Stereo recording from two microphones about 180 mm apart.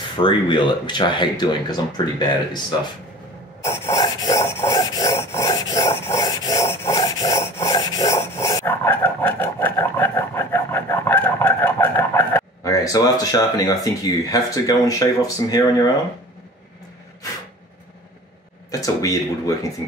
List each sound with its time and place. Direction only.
0.2 s speech: 25° left (ahead or behind)
3.6 s filing: 15° left (ahead or behind)
13.8 s speech: 20° left (ahead or behind)
18.7 s speech: 20° left (ahead or behind)